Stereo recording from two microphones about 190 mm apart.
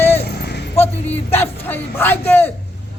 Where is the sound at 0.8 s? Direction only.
10° left (ahead or behind).